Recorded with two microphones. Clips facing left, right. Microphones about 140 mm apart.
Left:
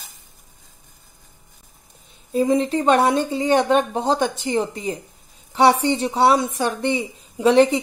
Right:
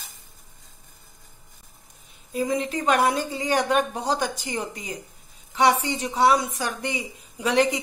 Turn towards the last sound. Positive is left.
turn(degrees=25)  # may be behind; listen again after turning